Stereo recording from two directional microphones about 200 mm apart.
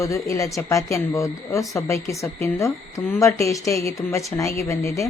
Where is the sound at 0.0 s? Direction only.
15° left (ahead or behind).